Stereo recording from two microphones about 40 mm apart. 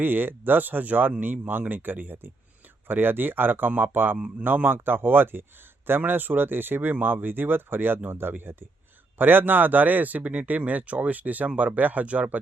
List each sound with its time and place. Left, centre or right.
0.0 s a man's voice: right
6.0 s a man's voice: right
8.1 s a man's voice: right